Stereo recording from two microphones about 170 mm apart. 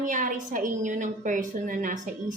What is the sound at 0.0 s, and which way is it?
Speech, 50° right (ahead or behind).